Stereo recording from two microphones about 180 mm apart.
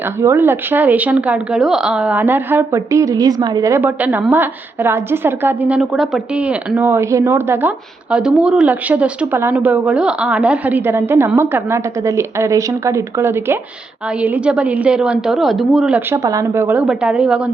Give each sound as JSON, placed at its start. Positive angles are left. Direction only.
{"t": 0.2, "sound": "a woman's voice", "side_deg": -15}